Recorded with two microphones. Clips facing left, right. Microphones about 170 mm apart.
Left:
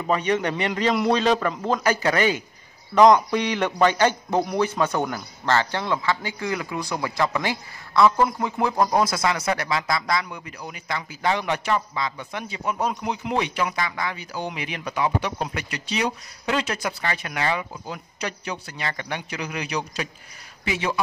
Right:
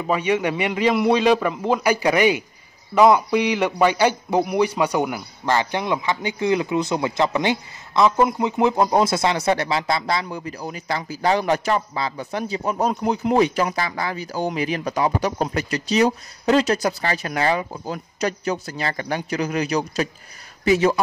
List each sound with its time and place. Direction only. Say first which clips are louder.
0.0 s a man's voice: right 2 dB; 10° right (ahead or behind); by 21.0 s 40° right (ahead or behind)